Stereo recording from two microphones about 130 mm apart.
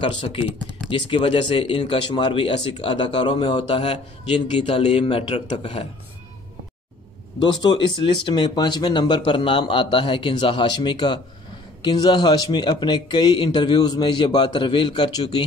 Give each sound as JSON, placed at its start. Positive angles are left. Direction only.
{"t": 0.0, "sound": "speech", "side_deg": 45}
{"t": 7.3, "sound": "speech", "side_deg": 35}